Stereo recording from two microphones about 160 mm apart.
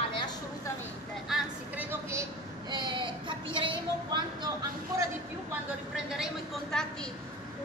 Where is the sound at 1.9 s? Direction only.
15° right (ahead or behind).